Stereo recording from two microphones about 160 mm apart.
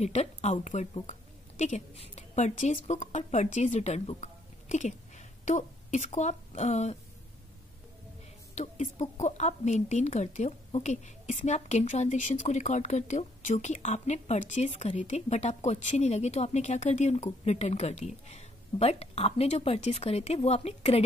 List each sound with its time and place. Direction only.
0.0 s a woman's voice: 45° left (ahead or behind)
8.5 s speech: 45° left (ahead or behind)